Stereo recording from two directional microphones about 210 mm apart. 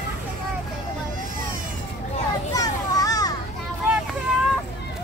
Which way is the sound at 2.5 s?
15° left (ahead or behind).